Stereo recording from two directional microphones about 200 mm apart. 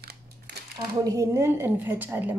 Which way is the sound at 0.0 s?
50° right (ahead or behind).